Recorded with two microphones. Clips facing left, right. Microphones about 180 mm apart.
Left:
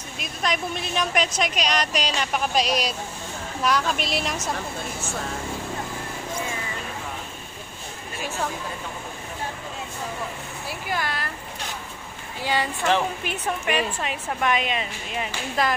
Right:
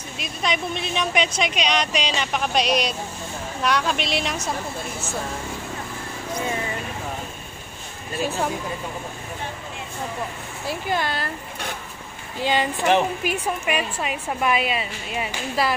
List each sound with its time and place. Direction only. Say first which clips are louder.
0.2 s a woman's voice: right 1 dB; centre (ahead or behind)
10.9 s speech: right 3 dB; 25° right (ahead or behind)
12.4 s a woman's voice: right 3 dB; 20° right (ahead or behind)